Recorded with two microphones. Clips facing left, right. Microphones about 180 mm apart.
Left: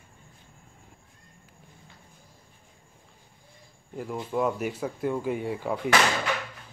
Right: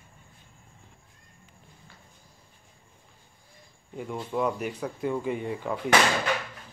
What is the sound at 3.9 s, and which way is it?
Speech, 5° left (ahead or behind).